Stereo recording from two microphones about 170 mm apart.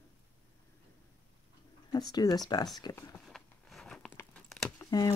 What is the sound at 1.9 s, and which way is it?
Speech, 25° left (ahead or behind).